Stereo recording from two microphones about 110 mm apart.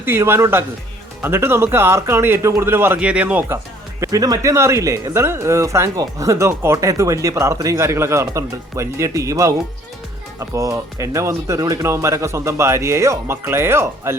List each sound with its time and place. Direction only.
0.0 s speech: 20° right (ahead or behind)
4.0 s speech: 30° right (ahead or behind)